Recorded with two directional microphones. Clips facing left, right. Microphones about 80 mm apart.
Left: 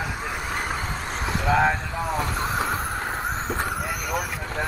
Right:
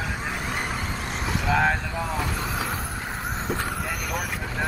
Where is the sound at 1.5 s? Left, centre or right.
Left.